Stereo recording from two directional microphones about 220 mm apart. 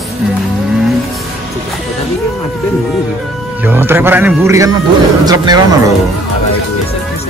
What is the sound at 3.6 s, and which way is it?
Speech, 10° right (ahead or behind).